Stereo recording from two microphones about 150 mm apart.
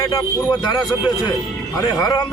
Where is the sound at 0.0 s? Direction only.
25° left (ahead or behind).